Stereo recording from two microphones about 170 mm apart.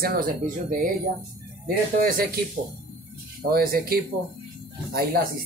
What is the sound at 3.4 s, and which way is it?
Speech, 60° right (ahead or behind).